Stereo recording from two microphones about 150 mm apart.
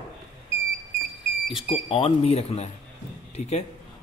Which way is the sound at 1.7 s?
40° left (ahead or behind).